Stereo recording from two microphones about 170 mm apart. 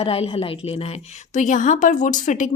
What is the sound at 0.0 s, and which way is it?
A woman's voice, 35° left (ahead or behind).